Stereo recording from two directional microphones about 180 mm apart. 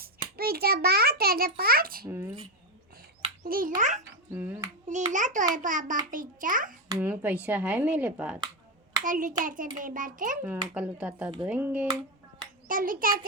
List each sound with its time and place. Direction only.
0.0 s a child's voice: 55° right (ahead or behind)
2.0 s speech: 15° right (ahead or behind)
3.4 s a child's voice: 50° right (ahead or behind)
4.3 s speech: 15° right (ahead or behind)
5.1 s a child's voice: 45° right (ahead or behind)
6.8 s a child's voice: 20° right (ahead or behind)
7.1 s speech: 10° right (ahead or behind)
9.0 s a child's voice: 45° right (ahead or behind)
10.8 s speech: 5° right (ahead or behind)
12.6 s a child's voice: 50° right (ahead or behind)